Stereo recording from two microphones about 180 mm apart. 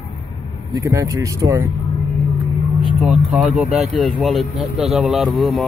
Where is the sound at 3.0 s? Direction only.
Centre (ahead or behind).